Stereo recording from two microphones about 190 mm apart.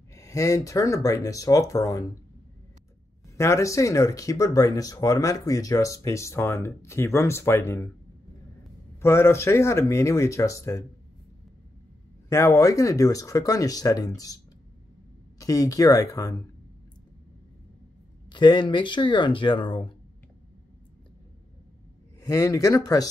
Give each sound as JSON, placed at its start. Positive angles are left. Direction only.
{"t": 0.1, "sound": "speech", "side_deg": 15}
{"t": 3.3, "sound": "speech", "side_deg": 15}
{"t": 9.0, "sound": "speech", "side_deg": 15}
{"t": 12.3, "sound": "speech", "side_deg": 15}
{"t": 18.3, "sound": "speech", "side_deg": 25}
{"t": 22.2, "sound": "speech", "side_deg": 15}